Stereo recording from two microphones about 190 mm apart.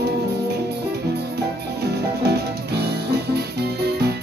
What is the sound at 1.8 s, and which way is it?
Music, 60° right (ahead or behind).